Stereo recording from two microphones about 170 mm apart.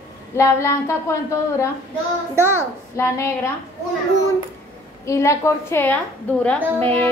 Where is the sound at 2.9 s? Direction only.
15° left (ahead or behind).